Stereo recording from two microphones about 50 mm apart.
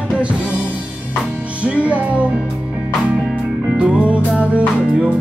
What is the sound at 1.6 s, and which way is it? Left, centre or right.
Music, right.